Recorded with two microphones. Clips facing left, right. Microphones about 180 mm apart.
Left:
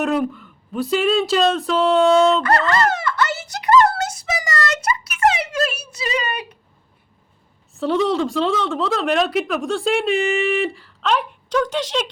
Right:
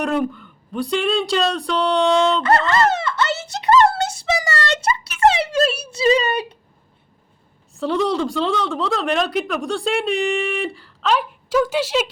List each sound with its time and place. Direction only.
0.0 s speech: centre (ahead or behind)
2.4 s a sound: 25° right (ahead or behind)
7.8 s speech: centre (ahead or behind)